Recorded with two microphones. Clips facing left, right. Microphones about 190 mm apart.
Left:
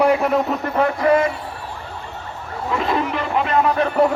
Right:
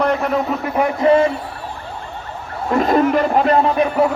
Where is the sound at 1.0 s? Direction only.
30° right (ahead or behind).